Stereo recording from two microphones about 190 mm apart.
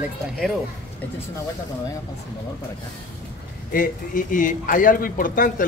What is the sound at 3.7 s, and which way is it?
A man's voice, 45° left (ahead or behind).